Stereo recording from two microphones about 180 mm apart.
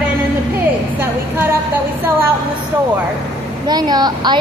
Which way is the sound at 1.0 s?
10° right (ahead or behind).